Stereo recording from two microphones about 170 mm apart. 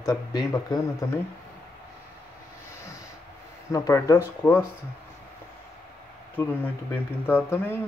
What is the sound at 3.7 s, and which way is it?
Speech, 20° left (ahead or behind).